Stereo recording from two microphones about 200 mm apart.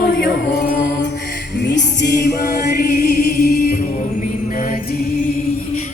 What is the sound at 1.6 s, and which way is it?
Music, 60° left (ahead or behind).